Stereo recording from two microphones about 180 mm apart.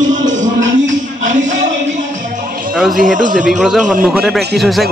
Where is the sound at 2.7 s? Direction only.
Centre (ahead or behind).